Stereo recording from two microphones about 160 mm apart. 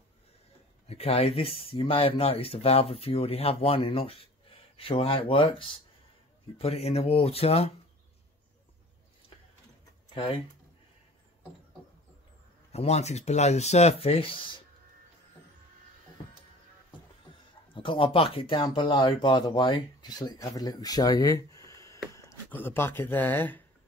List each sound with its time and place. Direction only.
0.8 s speech: 40° left (ahead or behind)
10.1 s speech: 35° left (ahead or behind)
12.7 s speech: 45° left (ahead or behind)
17.7 s speech: 35° left (ahead or behind); by 23.6 s 10° left (ahead or behind)